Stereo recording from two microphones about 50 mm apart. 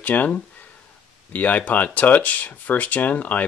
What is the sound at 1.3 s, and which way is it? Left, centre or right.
Speech, left.